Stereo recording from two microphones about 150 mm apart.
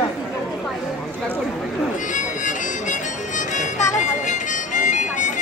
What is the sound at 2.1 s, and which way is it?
Music, 60° left (ahead or behind).